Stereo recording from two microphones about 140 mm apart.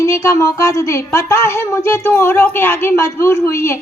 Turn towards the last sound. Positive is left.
turn(degrees=20)  # may be behind; listen again after turning